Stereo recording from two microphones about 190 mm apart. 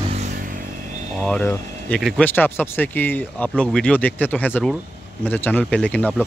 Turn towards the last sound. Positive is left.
turn(degrees=5)  # may be behind; listen again after turning